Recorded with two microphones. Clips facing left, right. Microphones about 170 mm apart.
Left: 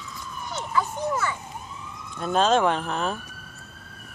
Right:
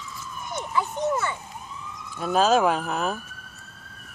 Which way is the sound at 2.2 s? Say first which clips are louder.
Right 1 dB; 5° right (ahead or behind).